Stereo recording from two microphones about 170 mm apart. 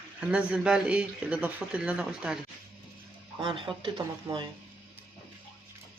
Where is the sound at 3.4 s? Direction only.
30° right (ahead or behind).